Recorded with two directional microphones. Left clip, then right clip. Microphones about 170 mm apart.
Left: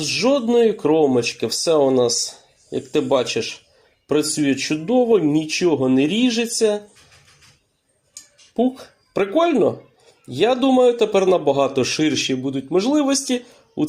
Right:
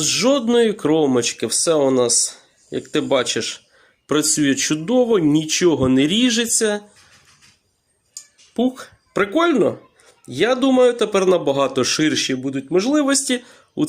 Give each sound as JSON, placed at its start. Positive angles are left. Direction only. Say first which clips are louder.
{"t": 0.0, "sound": "a man's voice", "louder": "right 1 dB", "side_deg": -30}
{"t": 8.1, "sound": "a sound", "louder": "left 1 dB", "side_deg": -30}
{"t": 10.2, "sound": "a man's voice", "louder": "even", "side_deg": -20}